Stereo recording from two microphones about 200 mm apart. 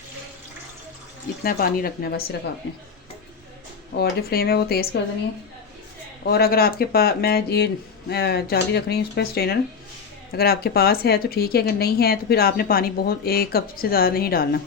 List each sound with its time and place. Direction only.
1.5 s speech: 45° left (ahead or behind)
3.9 s speech: 50° left (ahead or behind)
6.2 s speech: 50° left (ahead or behind)